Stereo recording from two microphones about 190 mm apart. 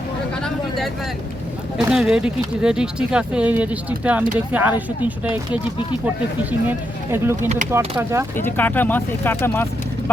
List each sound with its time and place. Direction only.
1.8 s speech: 5° right (ahead or behind)
6.7 s speech: 10° right (ahead or behind)
7.4 s speech: 40° right (ahead or behind)
7.7 s speech: 10° right (ahead or behind)
8.4 s speech: 10° left (ahead or behind)